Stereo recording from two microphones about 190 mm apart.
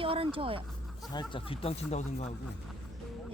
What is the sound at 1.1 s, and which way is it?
Speech, 25° left (ahead or behind).